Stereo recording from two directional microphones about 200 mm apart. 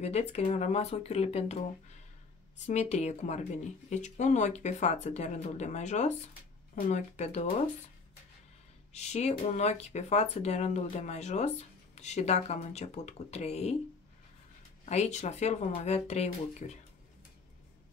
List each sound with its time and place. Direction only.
0.0 s speech: 35° left (ahead or behind)
2.6 s speech: 35° left (ahead or behind)
8.9 s speech: 35° left (ahead or behind)
14.9 s speech: 35° left (ahead or behind)